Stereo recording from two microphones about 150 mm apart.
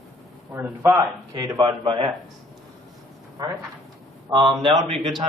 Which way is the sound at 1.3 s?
25° right (ahead or behind).